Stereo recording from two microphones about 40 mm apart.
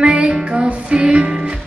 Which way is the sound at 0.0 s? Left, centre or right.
Right.